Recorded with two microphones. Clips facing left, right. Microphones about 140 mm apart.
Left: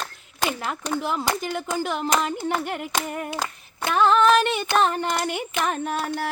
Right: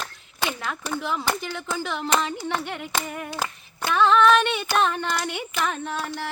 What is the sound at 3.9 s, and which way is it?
Child singing, 40° left (ahead or behind).